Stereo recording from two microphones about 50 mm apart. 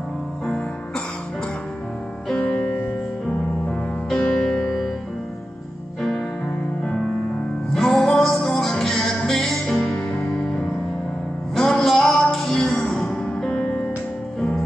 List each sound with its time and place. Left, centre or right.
2.3 s music: left
3.3 s music: centre
6.8 s music: centre
9.8 s music: left